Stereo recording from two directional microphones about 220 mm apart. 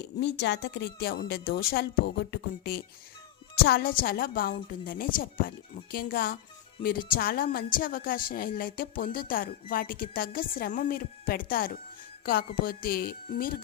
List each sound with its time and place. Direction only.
0.0 s a woman's voice: 50° left (ahead or behind)